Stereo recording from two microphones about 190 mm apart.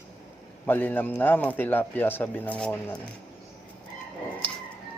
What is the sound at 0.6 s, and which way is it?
A man's voice, 10° left (ahead or behind).